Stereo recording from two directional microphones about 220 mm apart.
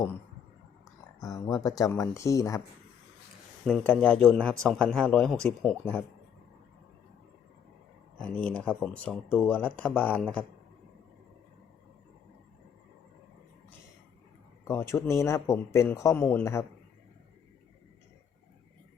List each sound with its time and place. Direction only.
1.2 s speech: 15° left (ahead or behind)
3.7 s speech: 5° left (ahead or behind)
8.2 s speech: 5° left (ahead or behind)
14.7 s speech: 10° left (ahead or behind)